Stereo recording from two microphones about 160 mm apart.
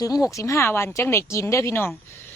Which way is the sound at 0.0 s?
20° left (ahead or behind).